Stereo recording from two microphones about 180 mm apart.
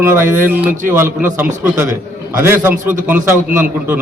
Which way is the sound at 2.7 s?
45° right (ahead or behind).